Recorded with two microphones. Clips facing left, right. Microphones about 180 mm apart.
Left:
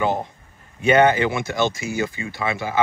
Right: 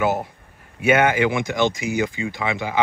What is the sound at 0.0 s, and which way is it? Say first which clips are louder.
Speech: right 1 dB; 5° right (ahead or behind).